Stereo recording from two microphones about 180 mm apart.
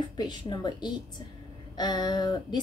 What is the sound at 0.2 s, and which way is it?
A woman's voice, 25° left (ahead or behind).